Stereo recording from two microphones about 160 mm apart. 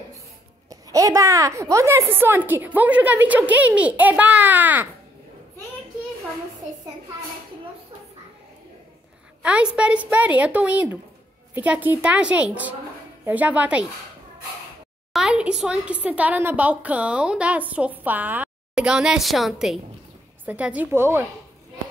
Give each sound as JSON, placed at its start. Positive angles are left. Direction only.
{"t": 0.7, "sound": "a woman's voice", "side_deg": -20}
{"t": 9.4, "sound": "a woman's voice", "side_deg": -5}
{"t": 15.1, "sound": "a woman's voice", "side_deg": -5}